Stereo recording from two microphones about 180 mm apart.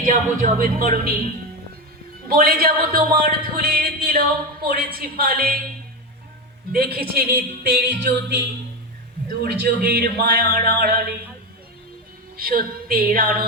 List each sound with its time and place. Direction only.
0.0 s speech: 45° right (ahead or behind)
6.7 s speech: 60° right (ahead or behind)
12.4 s speech: 55° right (ahead or behind)